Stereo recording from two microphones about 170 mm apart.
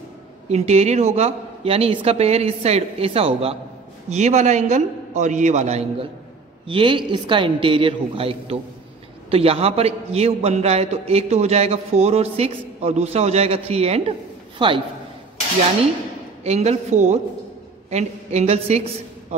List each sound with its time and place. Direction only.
0.5 s a man's voice: 40° right (ahead or behind)
6.7 s a man's voice: 30° right (ahead or behind)
16.4 s a man's voice: 40° right (ahead or behind)